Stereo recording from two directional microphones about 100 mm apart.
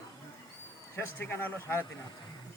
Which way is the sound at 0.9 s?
25° left (ahead or behind).